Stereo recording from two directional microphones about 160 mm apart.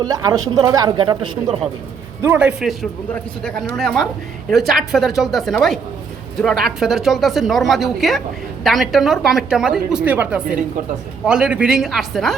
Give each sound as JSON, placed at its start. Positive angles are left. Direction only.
{"t": 0.0, "sound": "speech", "side_deg": -25}
{"t": 2.2, "sound": "a man's voice", "side_deg": -10}
{"t": 3.8, "sound": "a woman's voice", "side_deg": 5}